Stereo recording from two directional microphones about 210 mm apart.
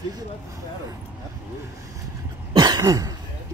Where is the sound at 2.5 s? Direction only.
20° right (ahead or behind).